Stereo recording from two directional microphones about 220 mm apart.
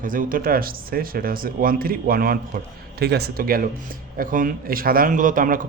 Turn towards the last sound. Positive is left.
turn(degrees=-40)  # may be behind; listen again after turning